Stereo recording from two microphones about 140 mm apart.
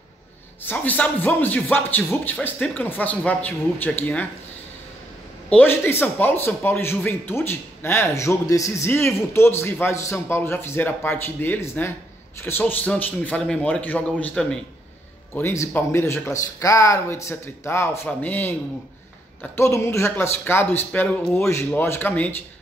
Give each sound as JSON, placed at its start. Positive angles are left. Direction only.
{"t": 0.6, "sound": "a man's voice", "side_deg": 15}
{"t": 5.5, "sound": "a man's voice", "side_deg": 15}
{"t": 15.3, "sound": "a man's voice", "side_deg": 20}